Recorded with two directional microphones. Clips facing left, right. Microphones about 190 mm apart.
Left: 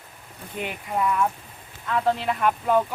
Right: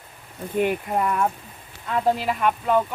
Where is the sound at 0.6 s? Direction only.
50° right (ahead or behind).